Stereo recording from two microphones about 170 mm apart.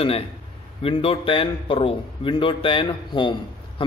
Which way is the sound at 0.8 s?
30° left (ahead or behind).